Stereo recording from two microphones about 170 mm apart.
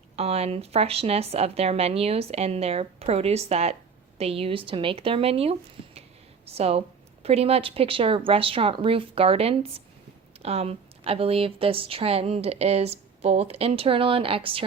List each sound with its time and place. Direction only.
0.2 s speech: 35° right (ahead or behind)